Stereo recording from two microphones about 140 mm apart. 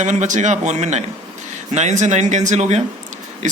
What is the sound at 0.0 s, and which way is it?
Speech, 60° right (ahead or behind).